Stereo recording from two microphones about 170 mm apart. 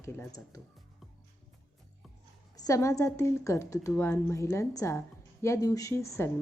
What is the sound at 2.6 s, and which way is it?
A woman's voice, 20° left (ahead or behind).